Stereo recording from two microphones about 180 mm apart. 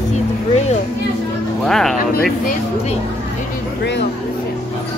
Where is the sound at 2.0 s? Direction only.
55° left (ahead or behind).